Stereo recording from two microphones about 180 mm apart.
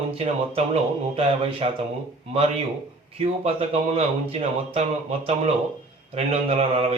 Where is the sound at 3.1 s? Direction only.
35° right (ahead or behind).